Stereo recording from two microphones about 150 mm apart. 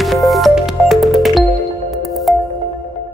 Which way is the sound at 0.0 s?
Centre (ahead or behind).